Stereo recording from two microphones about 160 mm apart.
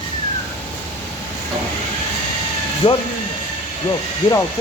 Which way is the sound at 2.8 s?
30° left (ahead or behind).